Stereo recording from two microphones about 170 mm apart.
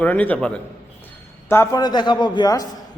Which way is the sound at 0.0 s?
10° left (ahead or behind).